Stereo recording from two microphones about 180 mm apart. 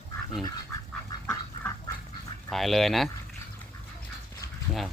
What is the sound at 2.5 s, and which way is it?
Speech, centre (ahead or behind).